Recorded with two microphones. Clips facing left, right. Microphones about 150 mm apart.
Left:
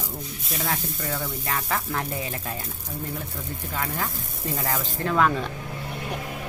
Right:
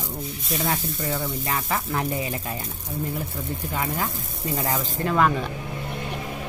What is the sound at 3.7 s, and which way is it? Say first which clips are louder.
Speech: right 2 dB; 15° right (ahead or behind).